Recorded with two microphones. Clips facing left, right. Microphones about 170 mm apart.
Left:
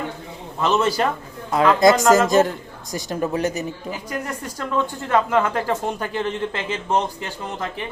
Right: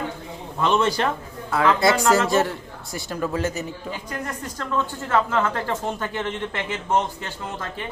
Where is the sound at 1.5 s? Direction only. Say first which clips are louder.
Left 3 dB; 20° left (ahead or behind).